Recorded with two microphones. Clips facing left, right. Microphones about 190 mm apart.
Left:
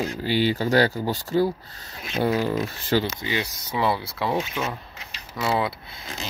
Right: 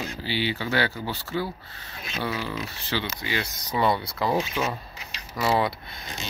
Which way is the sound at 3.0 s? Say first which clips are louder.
Left 3 dB; 20° left (ahead or behind).